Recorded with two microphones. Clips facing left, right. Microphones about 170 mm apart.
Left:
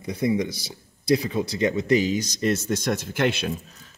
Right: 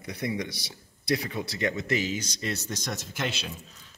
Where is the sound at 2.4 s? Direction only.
50° left (ahead or behind).